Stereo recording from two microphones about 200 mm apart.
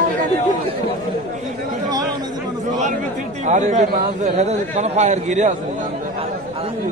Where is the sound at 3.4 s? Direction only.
35° right (ahead or behind).